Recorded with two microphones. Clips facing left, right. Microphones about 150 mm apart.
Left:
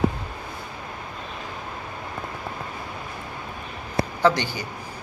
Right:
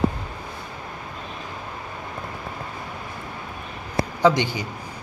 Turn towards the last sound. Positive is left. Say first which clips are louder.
# right 2 dB
turn(degrees=-20)  # may be behind; listen again after turning